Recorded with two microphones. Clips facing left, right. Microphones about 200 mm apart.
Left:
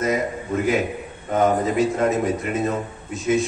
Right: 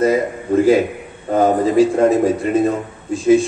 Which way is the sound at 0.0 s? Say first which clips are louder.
Right 6 dB; 30° right (ahead or behind).